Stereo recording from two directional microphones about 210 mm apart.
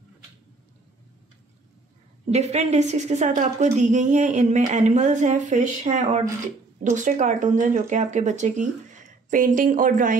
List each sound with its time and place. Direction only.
2.3 s a woman's voice: 30° right (ahead or behind)